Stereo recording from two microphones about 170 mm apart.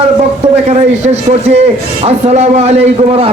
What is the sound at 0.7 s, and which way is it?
A man's voice, 40° right (ahead or behind).